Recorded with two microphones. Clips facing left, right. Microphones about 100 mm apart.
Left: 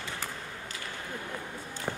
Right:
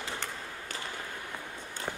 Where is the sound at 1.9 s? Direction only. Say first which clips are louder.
Left 3 dB; 10° left (ahead or behind).